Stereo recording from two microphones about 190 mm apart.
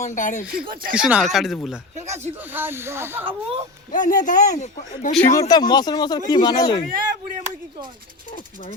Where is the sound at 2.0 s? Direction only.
35° right (ahead or behind).